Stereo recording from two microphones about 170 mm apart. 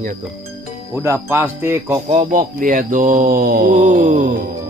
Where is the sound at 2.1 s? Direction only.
45° right (ahead or behind).